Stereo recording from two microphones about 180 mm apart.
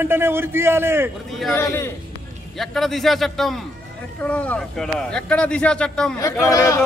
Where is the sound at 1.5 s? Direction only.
15° left (ahead or behind).